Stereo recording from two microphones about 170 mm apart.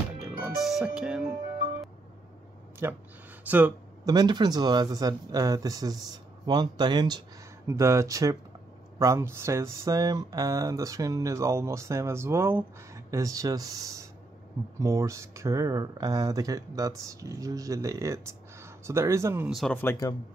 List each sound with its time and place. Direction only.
0.2 s music: centre (ahead or behind)
2.8 s speech: 15° right (ahead or behind)
4.1 s speech: 25° right (ahead or behind)
19.4 s speech: centre (ahead or behind)
19.8 s speech: 15° left (ahead or behind)